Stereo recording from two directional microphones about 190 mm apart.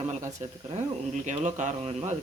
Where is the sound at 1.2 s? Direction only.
40° right (ahead or behind).